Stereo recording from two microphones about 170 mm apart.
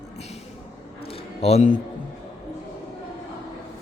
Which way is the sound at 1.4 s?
45° left (ahead or behind).